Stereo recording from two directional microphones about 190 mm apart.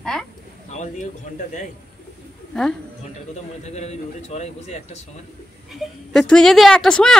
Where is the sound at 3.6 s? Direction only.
35° left (ahead or behind).